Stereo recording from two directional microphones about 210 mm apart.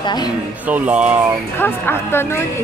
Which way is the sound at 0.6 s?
10° right (ahead or behind).